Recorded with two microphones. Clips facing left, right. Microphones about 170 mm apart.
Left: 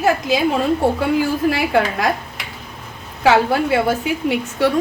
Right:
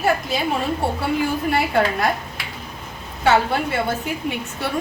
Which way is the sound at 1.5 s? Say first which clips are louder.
Left 2 dB; 90° left.